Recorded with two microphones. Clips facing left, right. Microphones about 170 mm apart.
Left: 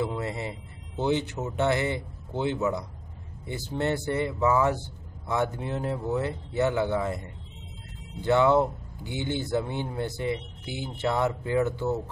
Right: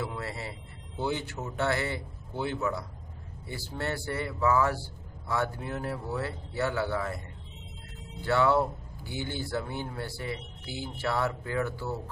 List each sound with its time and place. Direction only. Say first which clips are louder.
0.0 s a man's voice: left 6 dB; 20° left (ahead or behind)